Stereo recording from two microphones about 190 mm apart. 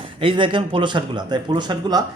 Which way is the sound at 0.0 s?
25° right (ahead or behind).